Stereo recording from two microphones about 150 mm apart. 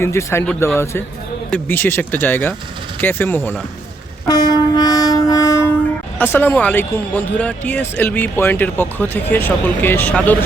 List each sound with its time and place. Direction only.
0.0 s speech: 20° left (ahead or behind)
1.5 s speech: 10° left (ahead or behind)
4.3 s train: 25° left (ahead or behind)
6.1 s speech: 15° left (ahead or behind)